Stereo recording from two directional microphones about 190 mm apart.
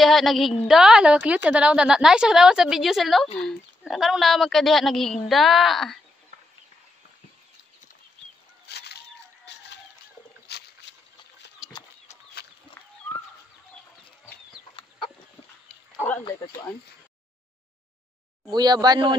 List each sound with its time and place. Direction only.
0.0 s a woman's voice: centre (ahead or behind)
8.6 s fowl: 60° left (ahead or behind)
9.5 s a sound: 65° left (ahead or behind)
18.5 s speech: 20° right (ahead or behind)